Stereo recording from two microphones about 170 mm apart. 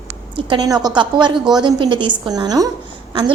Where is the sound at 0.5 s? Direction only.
20° right (ahead or behind).